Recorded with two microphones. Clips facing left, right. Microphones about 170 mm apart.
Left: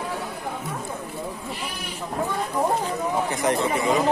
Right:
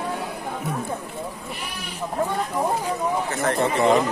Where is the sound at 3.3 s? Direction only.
15° left (ahead or behind).